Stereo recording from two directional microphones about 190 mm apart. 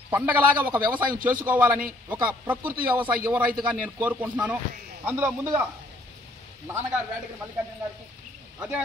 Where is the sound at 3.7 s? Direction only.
10° right (ahead or behind).